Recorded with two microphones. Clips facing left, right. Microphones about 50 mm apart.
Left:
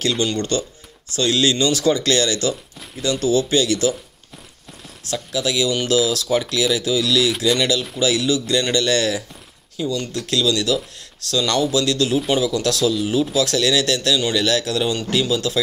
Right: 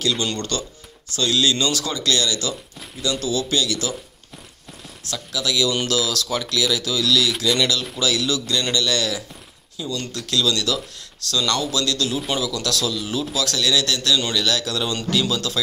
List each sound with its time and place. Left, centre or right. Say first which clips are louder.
0.4 s speech: left 5 dB; left
5.0 s speech: left 3 dB; left
7.2 s speech: left 2 dB; centre
8.0 s speech: left 3 dB; left
14.8 s speech: left 2 dB; centre